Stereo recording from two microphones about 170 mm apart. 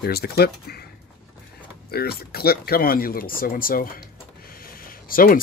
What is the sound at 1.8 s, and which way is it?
Speech, 65° left (ahead or behind).